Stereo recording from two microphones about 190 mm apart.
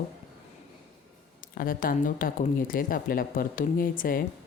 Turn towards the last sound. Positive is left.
turn(degrees=50)  # may be behind; listen again after turning